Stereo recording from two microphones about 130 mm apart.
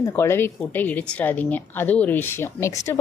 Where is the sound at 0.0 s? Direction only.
20° left (ahead or behind).